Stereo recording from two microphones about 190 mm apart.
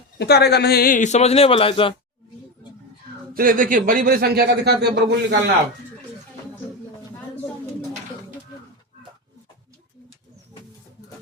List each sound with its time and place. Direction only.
0.2 s a man's voice: 60° left (ahead or behind); by 1.9 s 30° left (ahead or behind)
3.3 s speech: 45° right (ahead or behind)